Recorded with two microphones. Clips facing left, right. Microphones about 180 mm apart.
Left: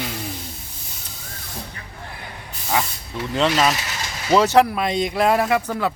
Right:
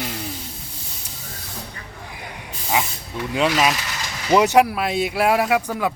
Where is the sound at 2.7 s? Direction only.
10° right (ahead or behind).